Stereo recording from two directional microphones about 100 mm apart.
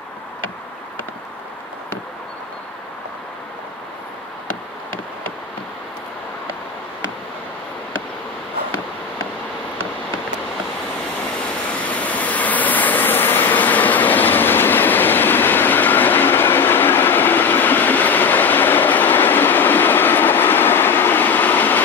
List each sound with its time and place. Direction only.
11.8 s vehicle: 15° left (ahead or behind)